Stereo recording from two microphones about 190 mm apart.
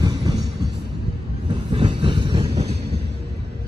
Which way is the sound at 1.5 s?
25° right (ahead or behind).